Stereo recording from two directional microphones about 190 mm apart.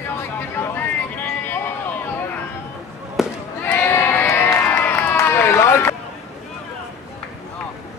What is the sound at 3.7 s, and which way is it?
Crowd, 10° left (ahead or behind).